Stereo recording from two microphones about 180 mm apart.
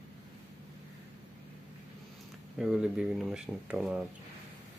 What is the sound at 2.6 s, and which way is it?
Speech, 5° right (ahead or behind).